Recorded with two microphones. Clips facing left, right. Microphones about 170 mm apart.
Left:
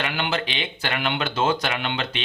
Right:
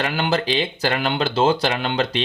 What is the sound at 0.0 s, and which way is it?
Speech, 40° right (ahead or behind).